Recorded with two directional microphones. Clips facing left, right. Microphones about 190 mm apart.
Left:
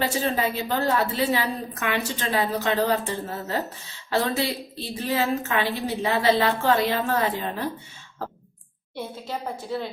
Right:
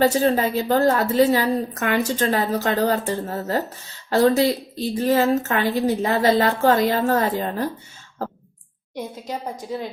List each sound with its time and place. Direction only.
0.0 s a woman's voice: 40° right (ahead or behind)